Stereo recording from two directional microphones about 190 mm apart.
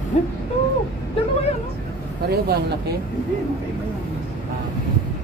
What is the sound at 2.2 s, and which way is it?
Speech, 55° right (ahead or behind).